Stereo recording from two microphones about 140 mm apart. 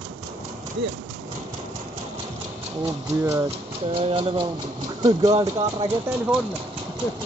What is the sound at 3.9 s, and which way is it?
Speech, 40° right (ahead or behind).